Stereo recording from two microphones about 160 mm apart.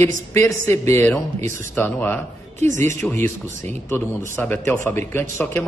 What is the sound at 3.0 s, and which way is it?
A man's voice, 15° left (ahead or behind).